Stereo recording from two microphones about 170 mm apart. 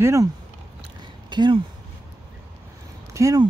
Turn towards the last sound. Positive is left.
turn(degrees=-20)  # may be behind; listen again after turning